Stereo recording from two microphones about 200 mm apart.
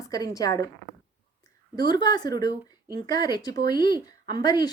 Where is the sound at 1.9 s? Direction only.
20° left (ahead or behind).